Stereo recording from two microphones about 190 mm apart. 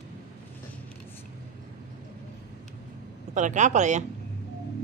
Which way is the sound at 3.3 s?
40° right (ahead or behind).